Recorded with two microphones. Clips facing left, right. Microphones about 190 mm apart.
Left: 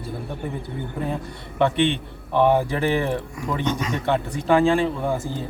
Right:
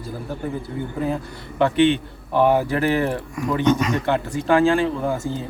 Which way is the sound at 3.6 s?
70° right (ahead or behind).